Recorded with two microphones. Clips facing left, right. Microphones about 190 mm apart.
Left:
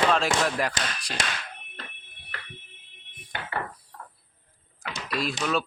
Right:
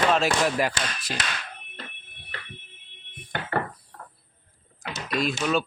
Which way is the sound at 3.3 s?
50° right (ahead or behind).